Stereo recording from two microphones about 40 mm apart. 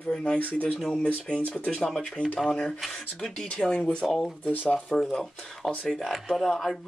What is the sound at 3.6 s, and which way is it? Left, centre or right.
Speech, left.